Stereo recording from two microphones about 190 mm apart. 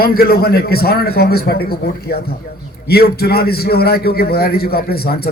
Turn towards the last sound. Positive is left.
turn(degrees=55)  # may be behind; listen again after turning